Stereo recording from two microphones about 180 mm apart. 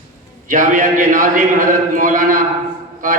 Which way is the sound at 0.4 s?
45° right (ahead or behind).